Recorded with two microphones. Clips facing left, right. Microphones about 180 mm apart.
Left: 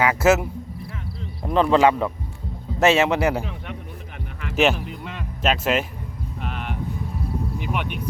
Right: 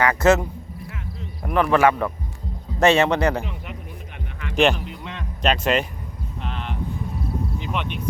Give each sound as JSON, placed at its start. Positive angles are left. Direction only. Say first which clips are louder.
{"t": 0.0, "sound": "speech", "louder": "right 1 dB", "side_deg": 10}
{"t": 1.5, "sound": "speech", "louder": "left 1 dB", "side_deg": 20}
{"t": 2.8, "sound": "a man's voice", "louder": "right 1 dB", "side_deg": 5}
{"t": 4.4, "sound": "music", "louder": "right 1 dB", "side_deg": 5}
{"t": 7.6, "sound": "speech", "louder": "left 1 dB", "side_deg": 10}